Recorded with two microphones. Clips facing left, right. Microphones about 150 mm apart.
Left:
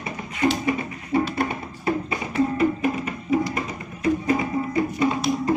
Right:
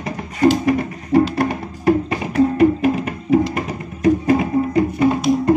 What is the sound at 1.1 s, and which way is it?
Music, 85° right.